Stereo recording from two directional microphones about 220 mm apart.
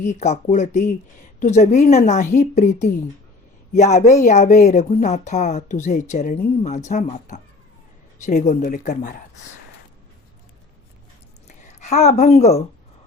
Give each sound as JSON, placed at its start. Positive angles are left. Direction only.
{"t": 0.0, "sound": "speech", "side_deg": 30}
{"t": 11.4, "sound": "speech", "side_deg": 30}